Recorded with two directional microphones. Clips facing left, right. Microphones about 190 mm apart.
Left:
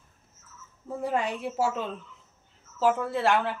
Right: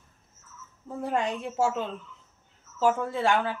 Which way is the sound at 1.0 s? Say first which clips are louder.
Even; 5° left (ahead or behind).